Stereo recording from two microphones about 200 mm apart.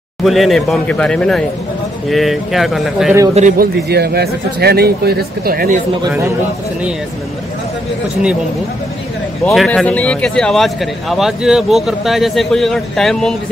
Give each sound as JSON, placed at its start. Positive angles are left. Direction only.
{"t": 0.2, "sound": "speech", "side_deg": 0}
{"t": 3.3, "sound": "a man's voice", "side_deg": -40}
{"t": 3.9, "sound": "speech", "side_deg": -50}
{"t": 9.4, "sound": "speech", "side_deg": 0}